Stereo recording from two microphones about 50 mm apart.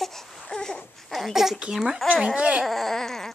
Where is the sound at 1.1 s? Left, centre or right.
Centre.